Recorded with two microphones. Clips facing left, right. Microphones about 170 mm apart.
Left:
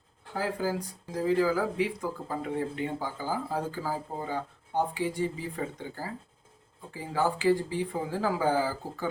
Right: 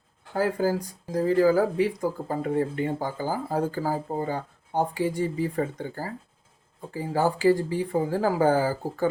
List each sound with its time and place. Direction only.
0.3 s speech: 45° right (ahead or behind)